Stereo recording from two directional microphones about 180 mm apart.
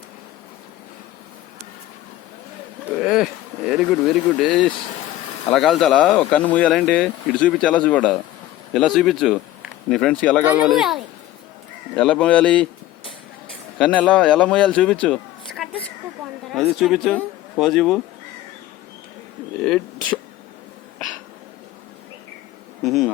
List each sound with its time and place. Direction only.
2.9 s speech: centre (ahead or behind)
10.4 s speech: 5° right (ahead or behind)
13.7 s speech: 5° left (ahead or behind)
15.0 s a sound: centre (ahead or behind)
16.5 s speech: centre (ahead or behind)
22.8 s speech: centre (ahead or behind)